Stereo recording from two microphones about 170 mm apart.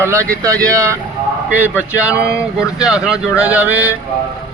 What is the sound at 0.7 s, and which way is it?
Speech, 15° right (ahead or behind).